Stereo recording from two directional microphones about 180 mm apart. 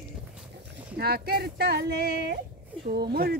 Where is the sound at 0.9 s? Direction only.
60° right (ahead or behind).